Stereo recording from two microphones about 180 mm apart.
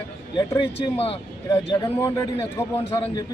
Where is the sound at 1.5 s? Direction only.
20° left (ahead or behind).